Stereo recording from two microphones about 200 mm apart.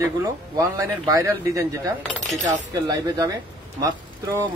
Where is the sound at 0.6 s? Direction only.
15° right (ahead or behind).